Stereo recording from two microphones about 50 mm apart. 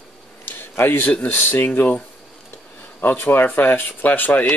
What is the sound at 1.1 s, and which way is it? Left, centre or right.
Speech, left.